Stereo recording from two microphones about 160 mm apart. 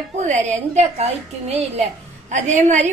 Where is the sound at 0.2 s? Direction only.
50° right (ahead or behind).